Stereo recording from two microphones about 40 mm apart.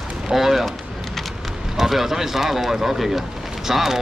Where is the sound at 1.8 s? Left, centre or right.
Centre.